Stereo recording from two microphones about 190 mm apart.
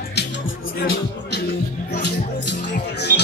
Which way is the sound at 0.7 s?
55° left (ahead or behind).